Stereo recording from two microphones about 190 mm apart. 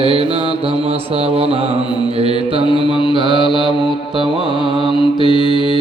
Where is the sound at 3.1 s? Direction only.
25° right (ahead or behind).